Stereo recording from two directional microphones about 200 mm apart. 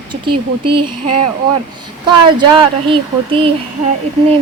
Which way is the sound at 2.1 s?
25° right (ahead or behind).